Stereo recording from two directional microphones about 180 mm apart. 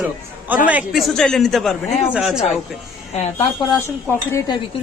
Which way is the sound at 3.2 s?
30° left (ahead or behind).